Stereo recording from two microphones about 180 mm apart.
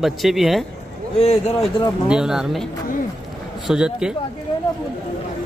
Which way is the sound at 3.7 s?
5° right (ahead or behind).